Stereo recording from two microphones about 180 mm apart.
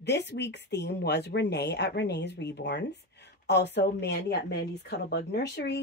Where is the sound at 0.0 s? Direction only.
70° left (ahead or behind).